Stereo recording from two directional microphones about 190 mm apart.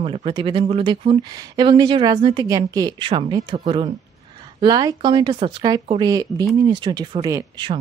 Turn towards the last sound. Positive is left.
turn(degrees=-20)  # may be behind; listen again after turning